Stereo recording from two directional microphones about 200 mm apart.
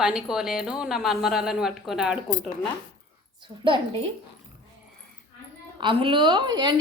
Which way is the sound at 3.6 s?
25° right (ahead or behind).